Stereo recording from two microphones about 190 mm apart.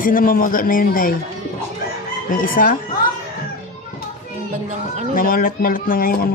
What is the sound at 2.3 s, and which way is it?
Speech, 45° left (ahead or behind).